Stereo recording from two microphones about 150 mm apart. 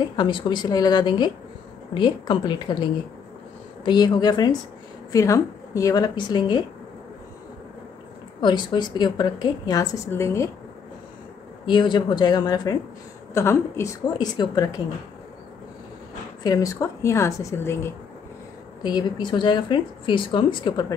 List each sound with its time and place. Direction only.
0.1 s a woman's voice: 30° left (ahead or behind)
8.4 s a woman's voice: 30° left (ahead or behind)
11.6 s a woman's voice: 30° left (ahead or behind)
16.4 s a woman's voice: 20° left (ahead or behind)
18.8 s speech: 30° left (ahead or behind)